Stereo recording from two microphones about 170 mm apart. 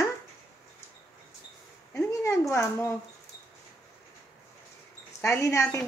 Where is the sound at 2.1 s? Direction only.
15° left (ahead or behind).